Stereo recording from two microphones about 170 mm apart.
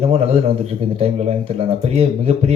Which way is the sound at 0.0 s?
35° right (ahead or behind).